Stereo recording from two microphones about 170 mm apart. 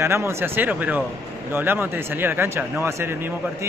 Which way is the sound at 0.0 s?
15° right (ahead or behind).